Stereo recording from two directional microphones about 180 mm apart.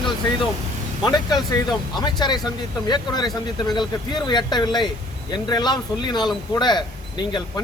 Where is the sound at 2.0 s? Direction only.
25° left (ahead or behind).